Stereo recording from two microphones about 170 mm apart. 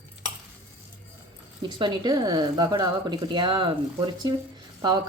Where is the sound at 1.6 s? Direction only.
25° right (ahead or behind).